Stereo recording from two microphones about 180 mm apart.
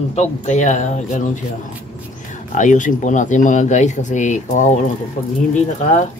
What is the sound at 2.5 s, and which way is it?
Speech, 45° left (ahead or behind).